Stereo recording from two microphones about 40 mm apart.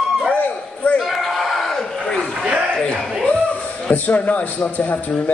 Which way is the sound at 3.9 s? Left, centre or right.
Left.